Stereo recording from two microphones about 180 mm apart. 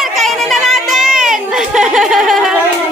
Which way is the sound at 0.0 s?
Centre (ahead or behind).